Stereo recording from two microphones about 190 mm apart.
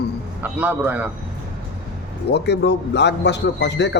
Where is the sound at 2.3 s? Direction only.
60° left (ahead or behind).